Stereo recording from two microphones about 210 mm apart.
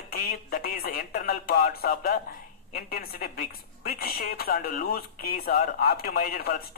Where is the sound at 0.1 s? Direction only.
45° left (ahead or behind).